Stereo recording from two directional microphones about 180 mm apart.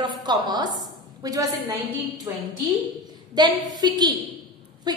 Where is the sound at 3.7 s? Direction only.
20° right (ahead or behind).